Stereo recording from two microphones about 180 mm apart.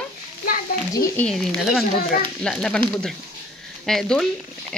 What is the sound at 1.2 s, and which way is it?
Speech, centre (ahead or behind).